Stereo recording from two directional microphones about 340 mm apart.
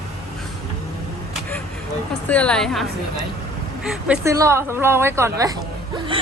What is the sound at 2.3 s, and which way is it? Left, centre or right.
A woman's voice, centre.